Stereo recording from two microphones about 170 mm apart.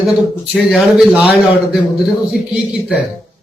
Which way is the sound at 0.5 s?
Centre (ahead or behind).